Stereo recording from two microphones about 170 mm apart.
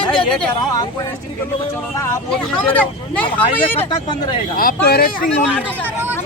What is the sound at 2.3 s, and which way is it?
Speech, 5° left (ahead or behind).